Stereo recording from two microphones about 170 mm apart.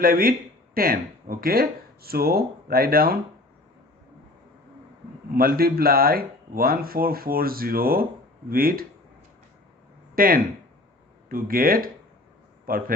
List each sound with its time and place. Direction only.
0.0 s speech: 55° right (ahead or behind)
5.3 s speech: 60° right (ahead or behind)
10.2 s speech: 55° right (ahead or behind)